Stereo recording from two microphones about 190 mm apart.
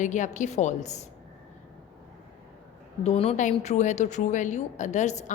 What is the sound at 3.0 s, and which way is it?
A woman's voice, 35° left (ahead or behind).